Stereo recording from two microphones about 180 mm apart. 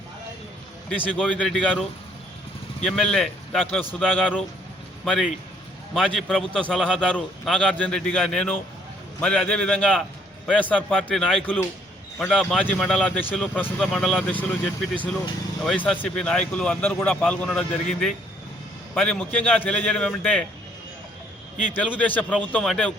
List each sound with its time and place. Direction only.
0.9 s a man's voice: 5° left (ahead or behind)
15.6 s a man's voice: 5° left (ahead or behind)
21.9 s a man's voice: 10° left (ahead or behind)